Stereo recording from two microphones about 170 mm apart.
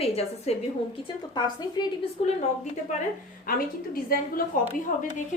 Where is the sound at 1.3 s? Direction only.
25° left (ahead or behind).